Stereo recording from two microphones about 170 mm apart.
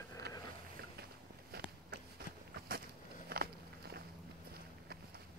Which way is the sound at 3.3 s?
65° right (ahead or behind).